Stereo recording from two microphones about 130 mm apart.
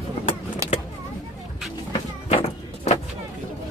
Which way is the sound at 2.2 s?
50° left (ahead or behind).